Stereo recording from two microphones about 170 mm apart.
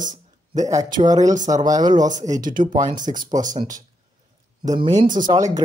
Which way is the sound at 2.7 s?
30° right (ahead or behind).